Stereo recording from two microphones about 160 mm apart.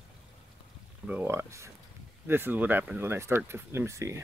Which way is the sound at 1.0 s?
10° right (ahead or behind).